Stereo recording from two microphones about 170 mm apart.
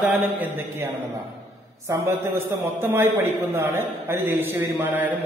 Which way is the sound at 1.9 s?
15° right (ahead or behind).